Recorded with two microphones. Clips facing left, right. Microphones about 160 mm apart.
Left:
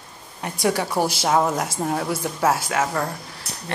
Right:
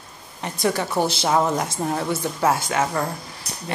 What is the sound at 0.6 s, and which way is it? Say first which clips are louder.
A woman's voice: even; 10° left (ahead or behind).